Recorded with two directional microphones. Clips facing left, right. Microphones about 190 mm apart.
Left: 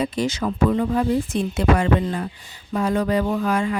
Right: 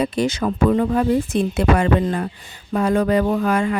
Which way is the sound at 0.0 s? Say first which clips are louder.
Right 3 dB; 55° right (ahead or behind).